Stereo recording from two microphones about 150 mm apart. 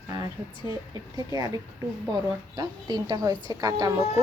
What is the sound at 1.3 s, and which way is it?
A woman's voice, 25° right (ahead or behind).